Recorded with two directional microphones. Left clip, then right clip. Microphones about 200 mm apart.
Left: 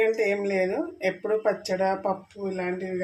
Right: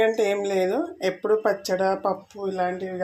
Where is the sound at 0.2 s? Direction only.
35° right (ahead or behind).